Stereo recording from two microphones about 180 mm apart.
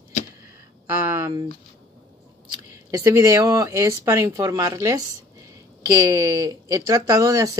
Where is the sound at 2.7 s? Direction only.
15° right (ahead or behind).